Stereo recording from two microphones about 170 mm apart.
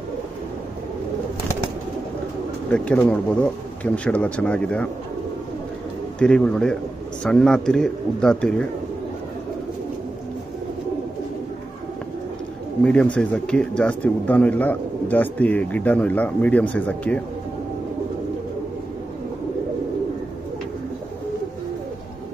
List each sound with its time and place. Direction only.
2.7 s speech: 5° left (ahead or behind)
6.1 s a man's voice: 5° left (ahead or behind)
12.8 s speech: 5° left (ahead or behind)